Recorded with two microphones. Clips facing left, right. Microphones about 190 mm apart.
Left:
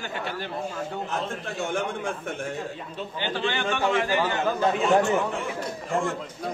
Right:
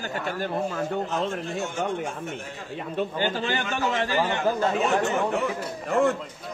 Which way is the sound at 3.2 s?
40° right (ahead or behind).